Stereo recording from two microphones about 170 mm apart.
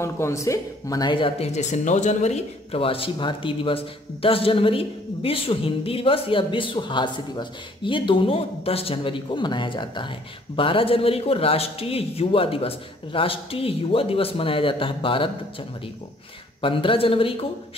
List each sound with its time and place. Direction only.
0.0 s speech: 15° left (ahead or behind)
16.6 s speech: 30° left (ahead or behind)